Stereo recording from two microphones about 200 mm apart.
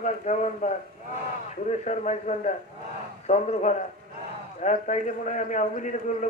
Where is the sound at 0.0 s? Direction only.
35° left (ahead or behind).